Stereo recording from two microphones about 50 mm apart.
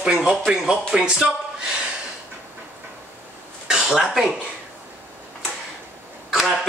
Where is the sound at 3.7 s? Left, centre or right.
Right.